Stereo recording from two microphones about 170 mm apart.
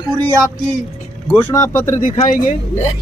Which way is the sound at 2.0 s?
50° left (ahead or behind).